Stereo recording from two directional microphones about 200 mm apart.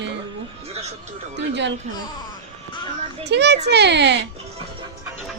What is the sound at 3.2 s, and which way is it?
Speech, 60° right (ahead or behind).